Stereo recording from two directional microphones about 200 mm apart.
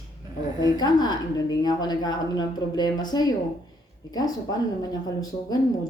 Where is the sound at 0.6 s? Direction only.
20° left (ahead or behind).